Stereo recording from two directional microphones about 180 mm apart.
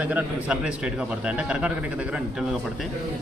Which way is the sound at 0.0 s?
10° right (ahead or behind).